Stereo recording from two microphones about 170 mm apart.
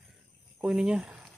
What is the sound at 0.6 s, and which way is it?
Speech, 5° right (ahead or behind).